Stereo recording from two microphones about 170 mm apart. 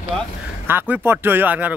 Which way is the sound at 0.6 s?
10° right (ahead or behind).